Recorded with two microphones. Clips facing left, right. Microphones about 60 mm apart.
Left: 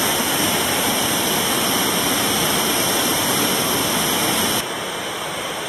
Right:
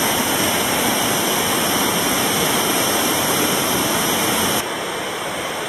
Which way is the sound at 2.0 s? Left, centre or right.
Centre.